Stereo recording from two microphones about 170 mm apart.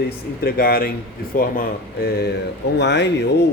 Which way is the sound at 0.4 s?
60° left (ahead or behind).